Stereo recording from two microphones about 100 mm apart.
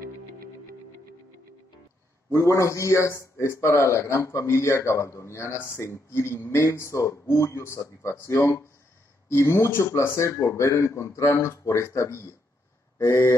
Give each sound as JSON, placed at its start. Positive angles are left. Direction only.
{"t": 2.3, "sound": "a man's voice", "side_deg": 30}